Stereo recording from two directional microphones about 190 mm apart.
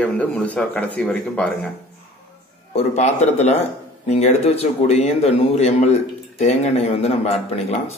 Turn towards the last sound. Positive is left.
turn(degrees=35)  # may be behind; listen again after turning